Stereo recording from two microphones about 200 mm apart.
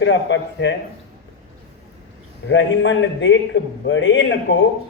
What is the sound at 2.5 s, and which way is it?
A man's voice, 65° left (ahead or behind).